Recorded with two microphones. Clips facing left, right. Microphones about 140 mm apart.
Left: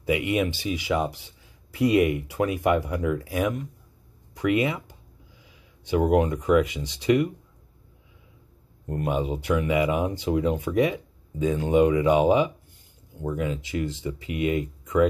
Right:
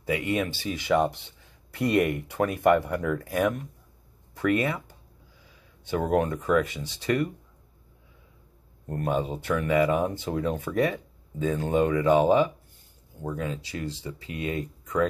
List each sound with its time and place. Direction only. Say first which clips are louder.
0.0 s speech: left 3 dB; 15° left (ahead or behind)
8.8 s speech: left 1 dB; 10° left (ahead or behind)